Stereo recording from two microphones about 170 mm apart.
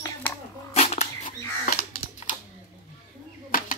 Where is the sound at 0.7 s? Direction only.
40° left (ahead or behind).